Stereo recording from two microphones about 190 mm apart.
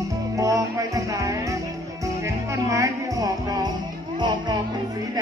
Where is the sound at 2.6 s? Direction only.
15° right (ahead or behind).